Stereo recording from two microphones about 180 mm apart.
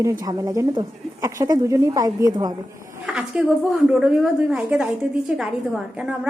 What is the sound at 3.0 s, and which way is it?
A woman's voice, 5° right (ahead or behind).